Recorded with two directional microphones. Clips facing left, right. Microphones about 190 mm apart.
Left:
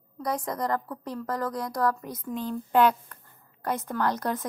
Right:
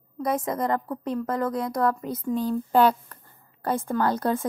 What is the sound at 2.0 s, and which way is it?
A woman's voice, 35° right (ahead or behind).